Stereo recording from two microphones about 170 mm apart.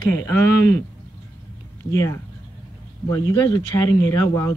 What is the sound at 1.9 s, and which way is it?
Speech, 20° left (ahead or behind).